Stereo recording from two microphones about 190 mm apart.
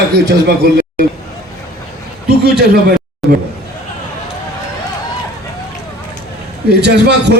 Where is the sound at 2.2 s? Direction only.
60° right (ahead or behind).